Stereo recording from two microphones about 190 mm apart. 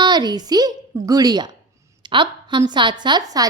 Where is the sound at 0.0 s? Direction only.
20° right (ahead or behind).